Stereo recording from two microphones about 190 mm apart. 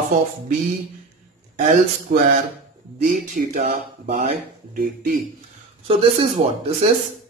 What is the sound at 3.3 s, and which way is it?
Speech, 40° right (ahead or behind).